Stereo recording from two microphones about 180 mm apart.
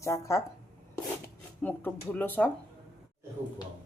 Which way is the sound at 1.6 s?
10° left (ahead or behind).